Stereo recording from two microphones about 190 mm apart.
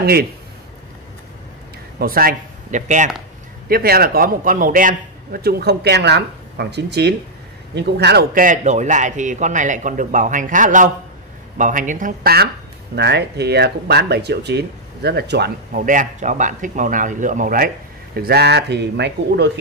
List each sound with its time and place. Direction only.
0.0 s a man's voice: 55° right (ahead or behind)
2.0 s speech: 50° right (ahead or behind)
3.6 s a man's voice: 50° right (ahead or behind)
18.1 s speech: 55° right (ahead or behind)